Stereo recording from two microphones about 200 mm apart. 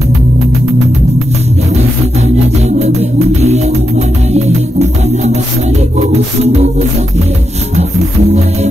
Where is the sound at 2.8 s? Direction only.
35° right (ahead or behind).